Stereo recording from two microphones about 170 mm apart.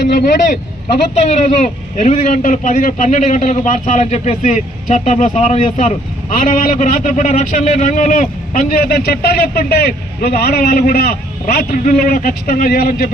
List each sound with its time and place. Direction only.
1.1 s a man's voice: 40° left (ahead or behind); by 13.1 s 60° left (ahead or behind)